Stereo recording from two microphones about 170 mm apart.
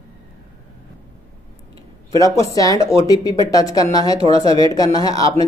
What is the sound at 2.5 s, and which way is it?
A man's voice, 20° left (ahead or behind).